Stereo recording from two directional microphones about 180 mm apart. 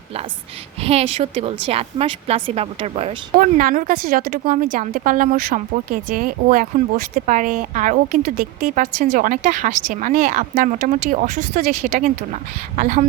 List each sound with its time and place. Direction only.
0.8 s a woman's voice: 35° right (ahead or behind)
3.3 s a woman's voice: 50° right (ahead or behind)
10.5 s a woman's voice: 40° right (ahead or behind)